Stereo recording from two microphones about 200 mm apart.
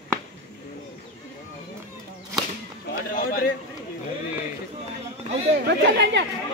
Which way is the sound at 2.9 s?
45° left (ahead or behind).